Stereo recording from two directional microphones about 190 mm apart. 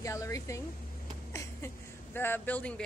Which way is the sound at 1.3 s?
15° left (ahead or behind).